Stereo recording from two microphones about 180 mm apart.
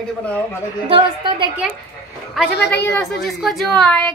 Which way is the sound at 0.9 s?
25° right (ahead or behind).